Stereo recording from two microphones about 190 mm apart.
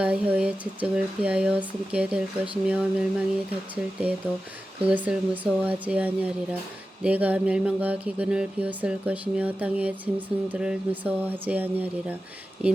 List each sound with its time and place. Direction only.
0.0 s speech: 5° right (ahead or behind)
4.8 s a sound: 10° right (ahead or behind)
12.6 s speech: 5° right (ahead or behind)